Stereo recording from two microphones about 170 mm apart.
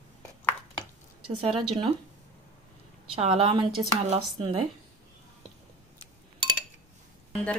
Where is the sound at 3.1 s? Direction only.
35° right (ahead or behind).